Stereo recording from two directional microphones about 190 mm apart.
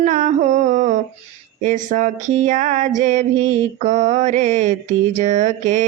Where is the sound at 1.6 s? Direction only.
40° right (ahead or behind).